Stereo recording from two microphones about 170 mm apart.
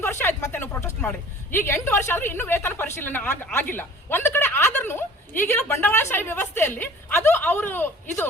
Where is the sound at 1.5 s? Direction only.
15° left (ahead or behind).